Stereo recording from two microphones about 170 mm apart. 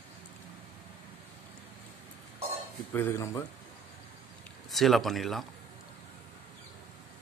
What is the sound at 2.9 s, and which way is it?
Speech, 15° left (ahead or behind).